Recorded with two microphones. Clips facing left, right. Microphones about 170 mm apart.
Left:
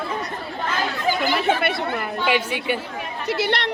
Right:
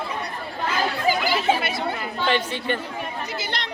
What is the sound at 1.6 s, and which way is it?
Chatter, 60° left (ahead or behind).